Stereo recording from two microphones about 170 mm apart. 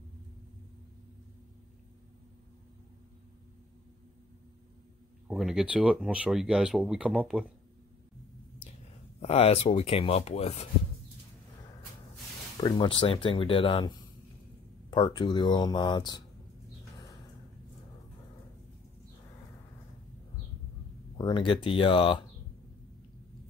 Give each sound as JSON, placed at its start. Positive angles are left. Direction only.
{"t": 5.3, "sound": "speech", "side_deg": -5}
{"t": 9.2, "sound": "speech", "side_deg": 40}
{"t": 12.5, "sound": "speech", "side_deg": 25}
{"t": 21.2, "sound": "speech", "side_deg": 30}